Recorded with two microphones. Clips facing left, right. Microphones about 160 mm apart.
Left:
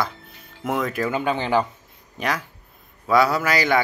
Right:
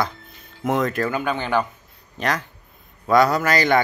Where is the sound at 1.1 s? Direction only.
25° left (ahead or behind).